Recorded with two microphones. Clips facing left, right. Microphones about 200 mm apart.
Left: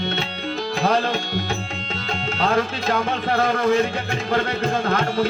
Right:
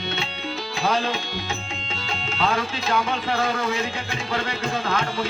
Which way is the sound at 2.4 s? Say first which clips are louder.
Left 3 dB; 50° left (ahead or behind).